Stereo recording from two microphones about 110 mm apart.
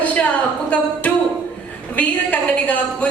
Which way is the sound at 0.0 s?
10° left (ahead or behind).